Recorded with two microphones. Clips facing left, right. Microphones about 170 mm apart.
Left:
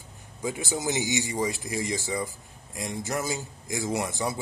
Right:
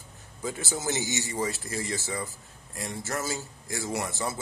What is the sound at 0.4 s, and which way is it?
A man's voice, 15° left (ahead or behind).